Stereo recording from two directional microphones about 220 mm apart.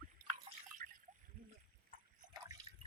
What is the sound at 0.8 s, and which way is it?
Splash, 35° right (ahead or behind).